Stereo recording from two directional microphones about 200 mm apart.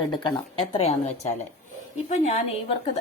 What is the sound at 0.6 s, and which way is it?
Speech, 30° left (ahead or behind).